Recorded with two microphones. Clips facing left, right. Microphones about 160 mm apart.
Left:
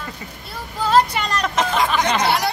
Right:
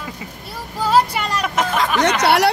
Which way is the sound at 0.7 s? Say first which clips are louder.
Even; 10° right (ahead or behind).